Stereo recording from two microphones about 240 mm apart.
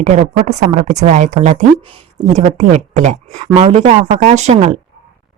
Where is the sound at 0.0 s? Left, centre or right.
Right.